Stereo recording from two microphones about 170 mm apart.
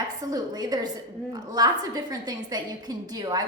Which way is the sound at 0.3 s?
20° right (ahead or behind).